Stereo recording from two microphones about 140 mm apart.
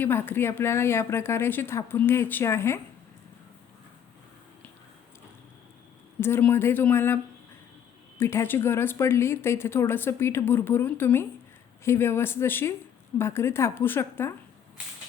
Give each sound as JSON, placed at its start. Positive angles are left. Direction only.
{"t": 0.0, "sound": "a woman's voice", "side_deg": 15}
{"t": 6.1, "sound": "a woman's voice", "side_deg": 15}
{"t": 8.2, "sound": "a woman's voice", "side_deg": 15}